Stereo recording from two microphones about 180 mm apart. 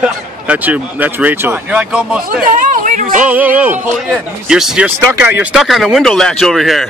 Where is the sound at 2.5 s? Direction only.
45° right (ahead or behind).